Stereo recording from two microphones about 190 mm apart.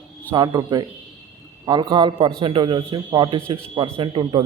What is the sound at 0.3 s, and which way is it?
A man's voice, 20° right (ahead or behind).